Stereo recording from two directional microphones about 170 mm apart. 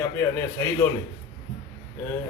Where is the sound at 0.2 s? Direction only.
15° left (ahead or behind).